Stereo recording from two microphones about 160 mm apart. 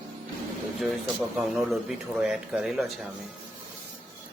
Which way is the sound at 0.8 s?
Centre (ahead or behind).